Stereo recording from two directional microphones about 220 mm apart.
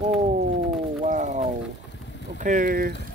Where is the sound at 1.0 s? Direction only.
35° right (ahead or behind).